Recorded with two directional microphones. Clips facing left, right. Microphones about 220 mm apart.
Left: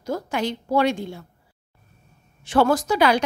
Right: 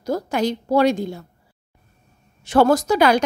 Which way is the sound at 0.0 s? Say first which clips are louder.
Right 4 dB; 40° right (ahead or behind).